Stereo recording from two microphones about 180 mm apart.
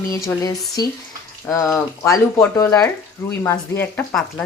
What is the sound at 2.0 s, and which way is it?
Speech, 15° left (ahead or behind).